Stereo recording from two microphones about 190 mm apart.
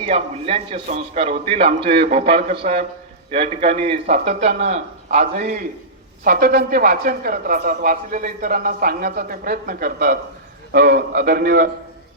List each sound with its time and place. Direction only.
0.0 s a man's voice: 30° right (ahead or behind); by 11.7 s 50° right (ahead or behind)